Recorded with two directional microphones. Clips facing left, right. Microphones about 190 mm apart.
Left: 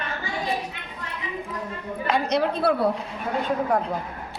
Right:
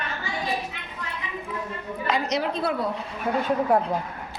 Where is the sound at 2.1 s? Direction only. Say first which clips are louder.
Left 3 dB; 60° left (ahead or behind).